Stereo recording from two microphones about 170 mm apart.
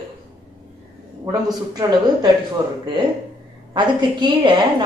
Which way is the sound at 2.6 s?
25° right (ahead or behind).